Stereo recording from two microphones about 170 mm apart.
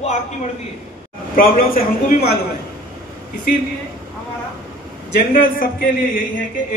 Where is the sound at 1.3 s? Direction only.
55° left (ahead or behind).